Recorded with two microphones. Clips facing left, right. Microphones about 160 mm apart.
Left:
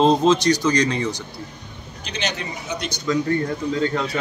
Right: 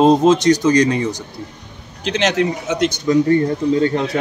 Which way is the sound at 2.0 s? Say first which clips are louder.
Right 11 dB; 90° right.